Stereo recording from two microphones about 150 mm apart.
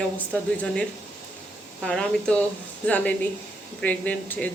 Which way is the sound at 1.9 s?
10° left (ahead or behind).